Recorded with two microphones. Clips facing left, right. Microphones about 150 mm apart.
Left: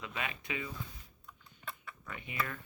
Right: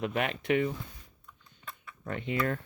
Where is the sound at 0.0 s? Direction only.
65° right (ahead or behind).